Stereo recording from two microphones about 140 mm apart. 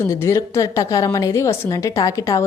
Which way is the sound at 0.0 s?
20° left (ahead or behind).